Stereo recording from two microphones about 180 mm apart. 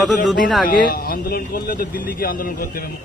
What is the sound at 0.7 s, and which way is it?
Speech, 55° left (ahead or behind).